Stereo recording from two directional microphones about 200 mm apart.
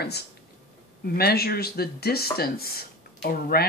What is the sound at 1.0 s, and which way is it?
Speech, 50° left (ahead or behind).